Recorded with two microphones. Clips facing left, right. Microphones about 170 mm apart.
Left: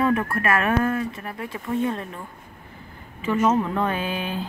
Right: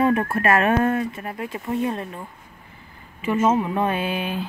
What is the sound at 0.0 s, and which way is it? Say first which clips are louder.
Speech: right 2 dB; 25° right (ahead or behind).